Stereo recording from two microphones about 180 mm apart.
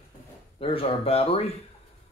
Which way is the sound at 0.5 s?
30° left (ahead or behind).